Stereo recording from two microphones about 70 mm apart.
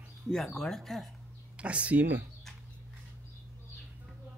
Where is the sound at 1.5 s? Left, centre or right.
Centre.